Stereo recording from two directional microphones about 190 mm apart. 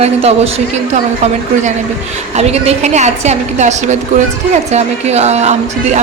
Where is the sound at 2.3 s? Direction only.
35° right (ahead or behind).